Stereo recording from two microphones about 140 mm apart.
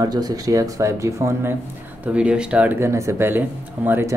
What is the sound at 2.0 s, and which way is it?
Speech, 10° right (ahead or behind).